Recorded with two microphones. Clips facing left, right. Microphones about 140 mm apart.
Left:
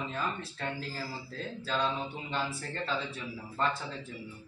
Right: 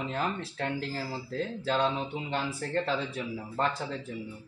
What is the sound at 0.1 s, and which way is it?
Speech, 65° right (ahead or behind).